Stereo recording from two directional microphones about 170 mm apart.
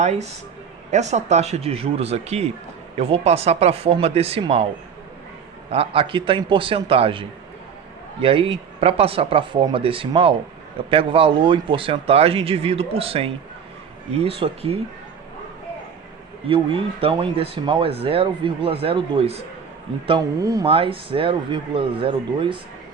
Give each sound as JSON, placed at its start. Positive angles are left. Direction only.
{"t": 0.0, "sound": "speech", "side_deg": -40}
{"t": 5.7, "sound": "speech", "side_deg": -35}
{"t": 16.5, "sound": "a man's voice", "side_deg": -30}
{"t": 20.7, "sound": "speech", "side_deg": -30}